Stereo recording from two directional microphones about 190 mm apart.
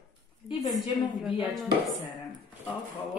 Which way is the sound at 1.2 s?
Centre (ahead or behind).